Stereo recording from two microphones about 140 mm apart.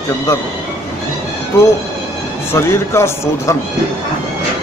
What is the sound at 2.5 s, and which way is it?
A man's voice, 20° left (ahead or behind).